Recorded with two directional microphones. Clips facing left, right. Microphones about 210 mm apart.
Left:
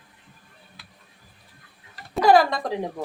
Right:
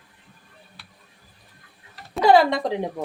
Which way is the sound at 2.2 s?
25° right (ahead or behind).